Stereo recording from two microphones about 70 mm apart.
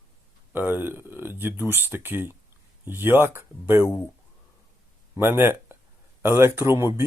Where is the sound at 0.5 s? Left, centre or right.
Right.